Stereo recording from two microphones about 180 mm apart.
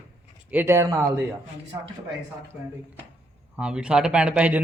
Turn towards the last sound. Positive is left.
turn(degrees=-5)  # may be behind; listen again after turning